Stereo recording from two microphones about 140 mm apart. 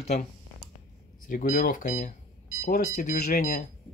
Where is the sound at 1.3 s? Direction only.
75° left (ahead or behind).